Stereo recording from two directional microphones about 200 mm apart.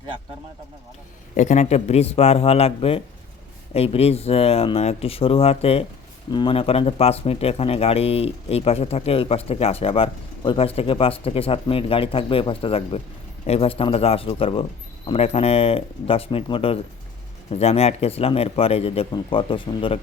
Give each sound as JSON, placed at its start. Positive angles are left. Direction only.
{"t": 1.4, "sound": "speech", "side_deg": 35}